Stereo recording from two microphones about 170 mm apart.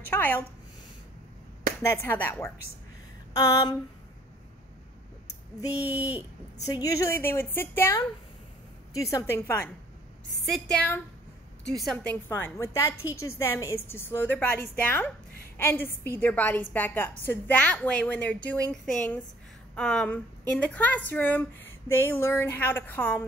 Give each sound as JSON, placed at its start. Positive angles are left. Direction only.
{"t": 0.1, "sound": "a woman's voice", "side_deg": 10}
{"t": 1.8, "sound": "a woman's voice", "side_deg": 15}
{"t": 3.3, "sound": "a sound", "side_deg": 20}
{"t": 5.9, "sound": "speech", "side_deg": -10}
{"t": 6.6, "sound": "a woman's voice", "side_deg": 20}
{"t": 12.3, "sound": "a woman's voice", "side_deg": 15}